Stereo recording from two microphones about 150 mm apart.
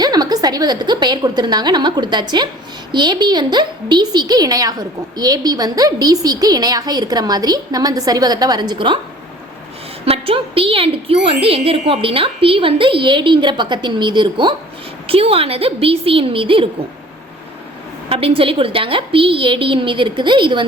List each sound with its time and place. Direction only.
0.0 s a woman's voice: 25° right (ahead or behind)
10.1 s speech: 40° right (ahead or behind)
18.1 s speech: 40° right (ahead or behind)